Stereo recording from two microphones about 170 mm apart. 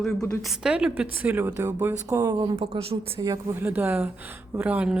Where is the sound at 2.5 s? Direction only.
35° right (ahead or behind).